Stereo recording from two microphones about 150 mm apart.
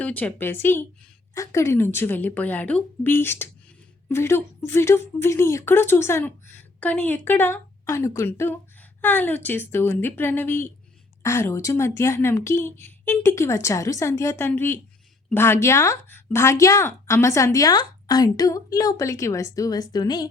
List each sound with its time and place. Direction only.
0.0 s speech: 10° left (ahead or behind); by 20.3 s 25° left (ahead or behind)